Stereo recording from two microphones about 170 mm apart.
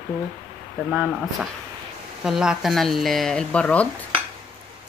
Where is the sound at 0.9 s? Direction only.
5° right (ahead or behind).